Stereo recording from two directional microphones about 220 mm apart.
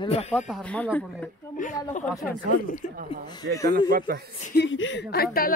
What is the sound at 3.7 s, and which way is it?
Speech, 40° right (ahead or behind).